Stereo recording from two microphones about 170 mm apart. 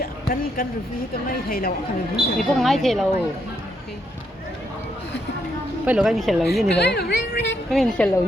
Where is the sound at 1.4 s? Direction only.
60° left (ahead or behind).